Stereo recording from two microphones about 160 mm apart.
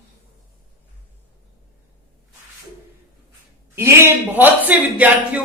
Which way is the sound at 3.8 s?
15° right (ahead or behind).